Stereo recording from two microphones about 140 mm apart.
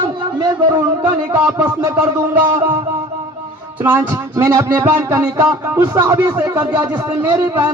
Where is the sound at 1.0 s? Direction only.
15° right (ahead or behind).